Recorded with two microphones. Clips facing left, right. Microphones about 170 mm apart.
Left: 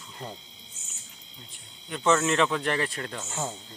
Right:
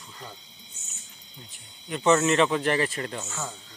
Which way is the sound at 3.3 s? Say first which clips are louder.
Left 3 dB; 30° left (ahead or behind).